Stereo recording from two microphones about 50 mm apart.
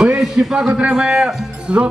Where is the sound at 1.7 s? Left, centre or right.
Right.